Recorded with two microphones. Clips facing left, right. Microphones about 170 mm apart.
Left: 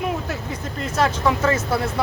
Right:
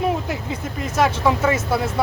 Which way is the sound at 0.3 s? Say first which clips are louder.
Right 2 dB; 10° right (ahead or behind).